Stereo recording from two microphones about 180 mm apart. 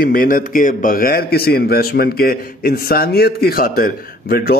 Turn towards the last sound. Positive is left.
turn(degrees=55)  # may be behind; listen again after turning